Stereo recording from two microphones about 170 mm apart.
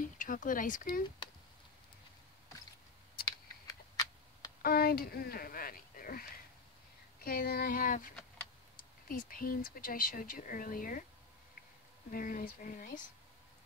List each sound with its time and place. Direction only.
0.0 s speech: 50° left (ahead or behind)
3.3 s computer keyboard: 20° left (ahead or behind)
4.6 s speech: 60° left (ahead or behind)
7.2 s speech: 65° left (ahead or behind)
12.1 s speech: 55° left (ahead or behind)